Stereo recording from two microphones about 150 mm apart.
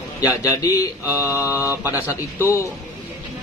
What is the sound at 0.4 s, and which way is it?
Speech, 25° left (ahead or behind).